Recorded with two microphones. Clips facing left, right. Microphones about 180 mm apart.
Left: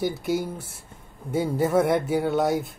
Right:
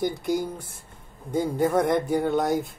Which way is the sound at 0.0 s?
5° left (ahead or behind).